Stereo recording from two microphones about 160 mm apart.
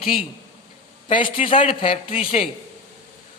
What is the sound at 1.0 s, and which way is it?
A man's voice, 35° left (ahead or behind).